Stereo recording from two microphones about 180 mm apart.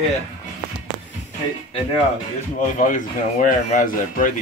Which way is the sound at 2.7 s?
45° left (ahead or behind).